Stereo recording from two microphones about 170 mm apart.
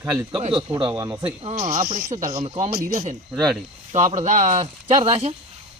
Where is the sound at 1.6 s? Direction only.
55° right (ahead or behind).